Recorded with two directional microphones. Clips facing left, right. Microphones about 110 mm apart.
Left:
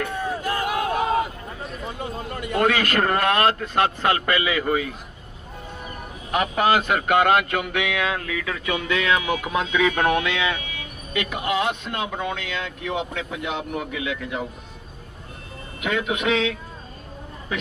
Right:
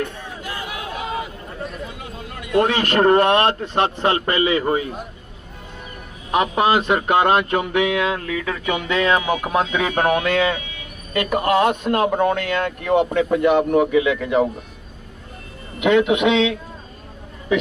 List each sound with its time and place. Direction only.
0.1 s crowd: 45° left (ahead or behind)
2.8 s speech: 35° right (ahead or behind)
6.3 s speech: 30° right (ahead or behind); by 14.5 s 70° right (ahead or behind)
15.8 s a man's voice: 80° right